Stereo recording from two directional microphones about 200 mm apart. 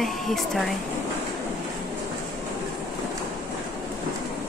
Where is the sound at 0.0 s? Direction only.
Centre (ahead or behind).